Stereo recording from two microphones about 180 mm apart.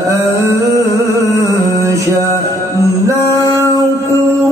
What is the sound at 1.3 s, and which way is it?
Music, 15° right (ahead or behind).